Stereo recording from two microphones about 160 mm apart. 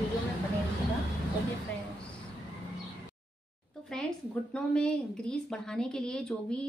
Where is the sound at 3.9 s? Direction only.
5° left (ahead or behind).